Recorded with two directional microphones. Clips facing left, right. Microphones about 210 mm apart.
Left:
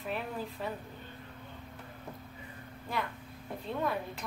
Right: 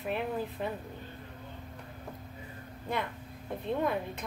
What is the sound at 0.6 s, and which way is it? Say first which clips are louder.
Speech: even; 20° right (ahead or behind).